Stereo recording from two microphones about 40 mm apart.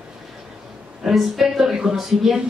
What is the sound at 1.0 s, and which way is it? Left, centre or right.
A woman's voice, centre.